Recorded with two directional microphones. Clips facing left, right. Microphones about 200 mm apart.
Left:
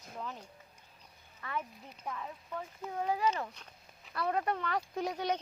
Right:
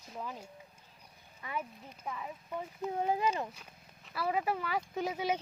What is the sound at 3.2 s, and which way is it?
Speech, 10° right (ahead or behind).